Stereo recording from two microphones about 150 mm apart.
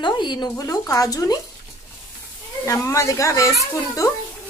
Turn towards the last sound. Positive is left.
turn(degrees=20)  # may be behind; listen again after turning